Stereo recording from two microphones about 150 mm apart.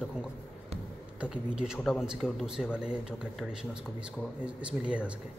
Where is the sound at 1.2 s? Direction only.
5° right (ahead or behind).